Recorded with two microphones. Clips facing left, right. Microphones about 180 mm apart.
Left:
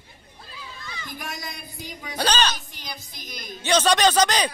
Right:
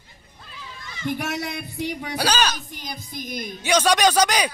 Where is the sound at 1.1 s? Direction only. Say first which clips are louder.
Right 9 dB; 70° right (ahead or behind).